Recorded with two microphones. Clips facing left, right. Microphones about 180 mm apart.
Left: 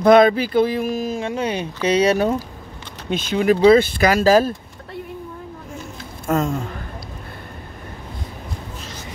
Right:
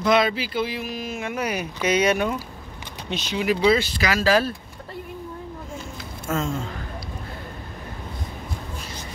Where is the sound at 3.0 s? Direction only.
50° left (ahead or behind).